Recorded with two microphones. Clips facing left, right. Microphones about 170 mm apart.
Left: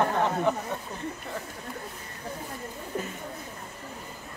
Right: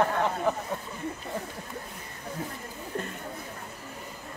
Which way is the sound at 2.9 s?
5° left (ahead or behind).